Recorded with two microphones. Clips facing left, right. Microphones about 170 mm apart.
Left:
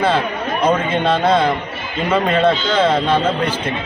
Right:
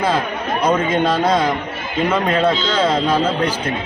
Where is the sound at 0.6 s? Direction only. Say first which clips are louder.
Even; 10° right (ahead or behind).